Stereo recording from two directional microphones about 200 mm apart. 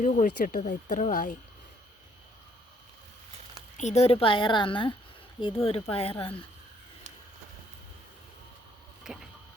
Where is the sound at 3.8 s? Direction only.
35° left (ahead or behind).